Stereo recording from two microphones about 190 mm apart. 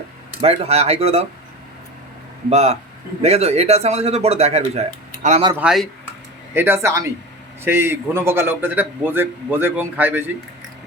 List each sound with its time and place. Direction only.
0.4 s speech: 35° right (ahead or behind)
2.5 s speech: 35° right (ahead or behind)
5.5 s a man's voice: centre (ahead or behind)